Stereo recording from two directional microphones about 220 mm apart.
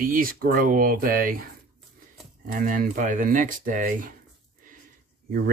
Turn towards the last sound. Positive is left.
turn(degrees=-40)  # may be behind; listen again after turning